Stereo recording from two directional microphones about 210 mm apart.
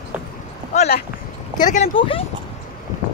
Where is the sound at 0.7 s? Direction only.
35° left (ahead or behind).